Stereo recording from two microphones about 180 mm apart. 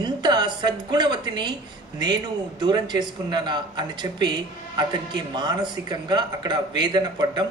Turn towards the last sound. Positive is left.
turn(degrees=-25)  # may be behind; listen again after turning